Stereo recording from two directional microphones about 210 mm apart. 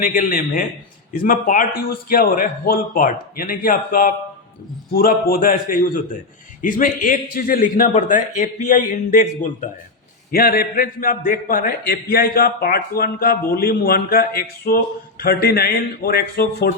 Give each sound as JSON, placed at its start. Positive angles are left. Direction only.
{"t": 0.0, "sound": "a man's voice", "side_deg": 40}